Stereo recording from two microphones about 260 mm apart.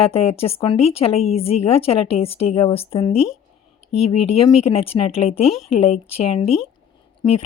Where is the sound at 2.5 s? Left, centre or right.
Left.